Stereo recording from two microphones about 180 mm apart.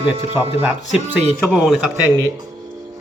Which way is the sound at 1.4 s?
Centre (ahead or behind).